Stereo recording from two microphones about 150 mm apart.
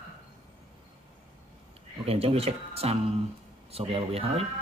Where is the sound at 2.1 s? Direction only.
40° right (ahead or behind).